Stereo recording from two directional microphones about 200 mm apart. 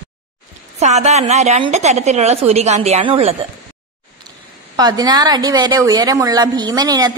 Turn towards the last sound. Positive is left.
turn(degrees=-20)  # may be behind; listen again after turning